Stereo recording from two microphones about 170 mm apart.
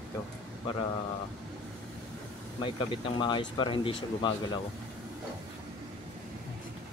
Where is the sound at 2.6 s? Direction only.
30° left (ahead or behind).